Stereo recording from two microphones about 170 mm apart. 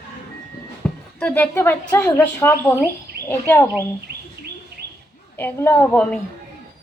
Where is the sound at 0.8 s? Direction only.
5° left (ahead or behind).